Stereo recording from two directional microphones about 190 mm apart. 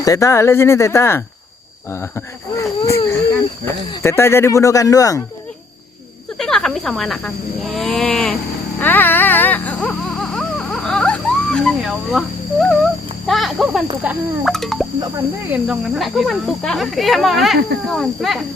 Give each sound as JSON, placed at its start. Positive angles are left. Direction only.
{"t": 0.0, "sound": "speech", "side_deg": 15}
{"t": 6.3, "sound": "speech", "side_deg": 0}
{"t": 8.8, "sound": "a sound", "side_deg": 10}
{"t": 13.2, "sound": "speech", "side_deg": 0}